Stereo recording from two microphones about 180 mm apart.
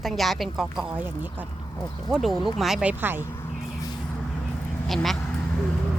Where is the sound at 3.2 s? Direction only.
15° left (ahead or behind).